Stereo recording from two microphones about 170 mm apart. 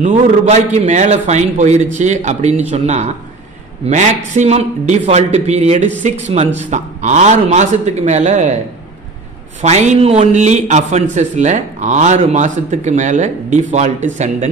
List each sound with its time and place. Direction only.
0.0 s a man's voice: 40° right (ahead or behind)
9.6 s a man's voice: 40° right (ahead or behind)